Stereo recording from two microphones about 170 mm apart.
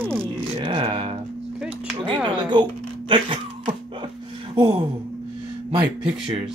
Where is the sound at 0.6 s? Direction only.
30° right (ahead or behind).